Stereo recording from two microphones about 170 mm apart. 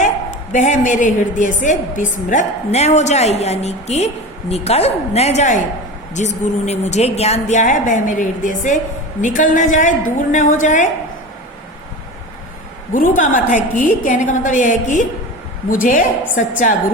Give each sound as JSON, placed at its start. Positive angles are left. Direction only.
{"t": 0.5, "sound": "a woman's voice", "side_deg": 45}
{"t": 12.9, "sound": "a woman's voice", "side_deg": 50}